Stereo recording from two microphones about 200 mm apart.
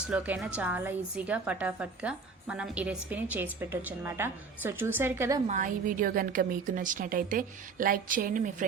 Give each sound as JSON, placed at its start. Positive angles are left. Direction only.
{"t": 0.1, "sound": "a woman's voice", "side_deg": -5}
{"t": 5.5, "sound": "a woman's voice", "side_deg": -40}